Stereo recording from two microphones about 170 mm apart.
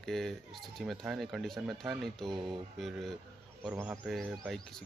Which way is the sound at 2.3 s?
25° right (ahead or behind).